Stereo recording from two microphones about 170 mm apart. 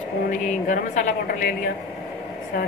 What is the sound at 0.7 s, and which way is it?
A woman's voice, 50° left (ahead or behind).